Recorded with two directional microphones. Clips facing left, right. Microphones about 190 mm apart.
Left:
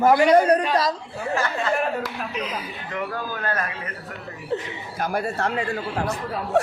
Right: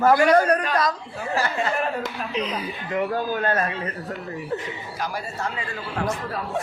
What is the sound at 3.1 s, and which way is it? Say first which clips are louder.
Speech: right 4 dB; 25° right (ahead or behind).